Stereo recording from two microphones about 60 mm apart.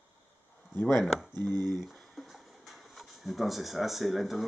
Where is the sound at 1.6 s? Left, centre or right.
Centre.